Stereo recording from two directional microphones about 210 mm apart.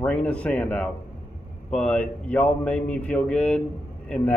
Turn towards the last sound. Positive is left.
turn(degrees=5)  # may be behind; listen again after turning